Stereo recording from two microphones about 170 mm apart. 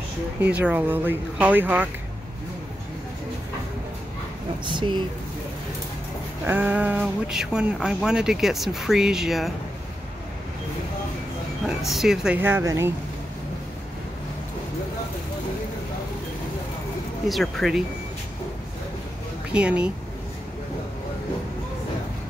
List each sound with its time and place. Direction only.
0.4 s speech: 10° right (ahead or behind)
4.6 s speech: 25° right (ahead or behind)
6.4 s speech: 10° right (ahead or behind)
11.6 s speech: centre (ahead or behind)
17.3 s speech: centre (ahead or behind)
19.5 s speech: 5° right (ahead or behind)